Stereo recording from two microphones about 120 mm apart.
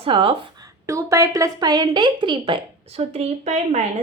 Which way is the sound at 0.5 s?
30° right (ahead or behind).